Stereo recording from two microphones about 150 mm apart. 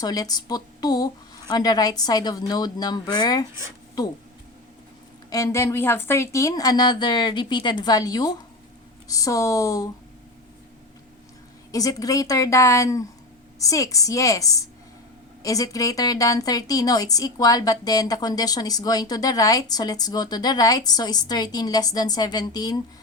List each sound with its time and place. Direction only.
0.0 s a woman's voice: 25° left (ahead or behind)
5.3 s a woman's voice: 20° left (ahead or behind)
11.7 s a woman's voice: 25° left (ahead or behind)